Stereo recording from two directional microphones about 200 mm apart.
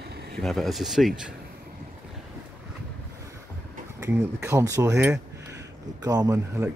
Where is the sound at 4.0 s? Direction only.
15° right (ahead or behind).